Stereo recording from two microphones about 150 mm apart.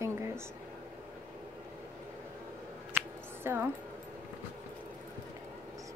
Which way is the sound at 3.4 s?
15° right (ahead or behind).